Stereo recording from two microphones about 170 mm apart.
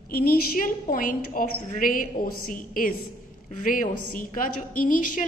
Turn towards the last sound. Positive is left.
turn(degrees=50)  # may be behind; listen again after turning